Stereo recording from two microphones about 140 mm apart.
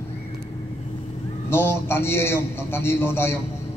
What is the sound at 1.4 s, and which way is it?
A man's voice, 15° left (ahead or behind).